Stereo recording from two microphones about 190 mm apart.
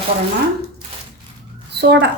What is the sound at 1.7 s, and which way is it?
Speech, 60° right (ahead or behind).